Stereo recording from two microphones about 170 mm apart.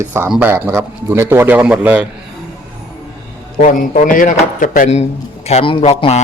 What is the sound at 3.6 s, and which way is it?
A man's voice, 50° left (ahead or behind).